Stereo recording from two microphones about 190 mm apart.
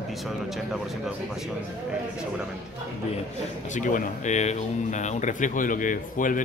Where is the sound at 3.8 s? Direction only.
40° left (ahead or behind).